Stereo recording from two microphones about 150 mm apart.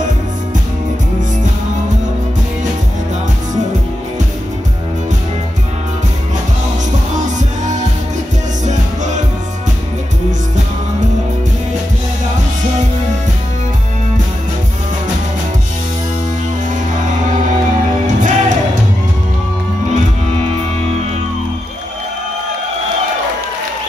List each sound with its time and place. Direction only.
7.2 s music: 55° right (ahead or behind)
18.0 s music: 55° right (ahead or behind)